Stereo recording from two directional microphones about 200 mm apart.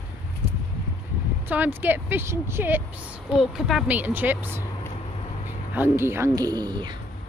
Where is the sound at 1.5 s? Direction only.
10° right (ahead or behind).